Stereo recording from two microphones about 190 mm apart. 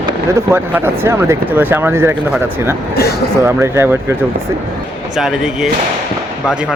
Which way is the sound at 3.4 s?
15° right (ahead or behind).